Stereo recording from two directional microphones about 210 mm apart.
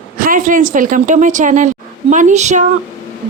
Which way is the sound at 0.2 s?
40° right (ahead or behind).